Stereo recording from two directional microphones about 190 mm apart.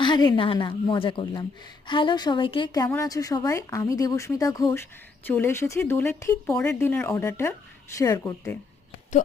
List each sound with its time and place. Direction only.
0.0 s a woman's voice: 20° left (ahead or behind)